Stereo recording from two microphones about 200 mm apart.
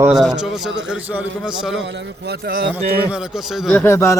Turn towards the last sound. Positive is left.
turn(degrees=15)  # may be behind; listen again after turning